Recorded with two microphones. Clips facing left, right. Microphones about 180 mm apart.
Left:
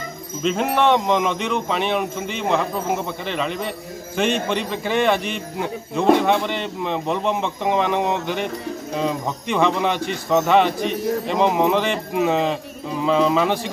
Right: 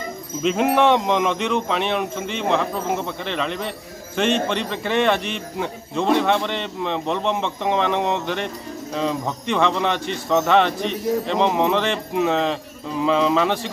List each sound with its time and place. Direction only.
0.4 s speech: centre (ahead or behind)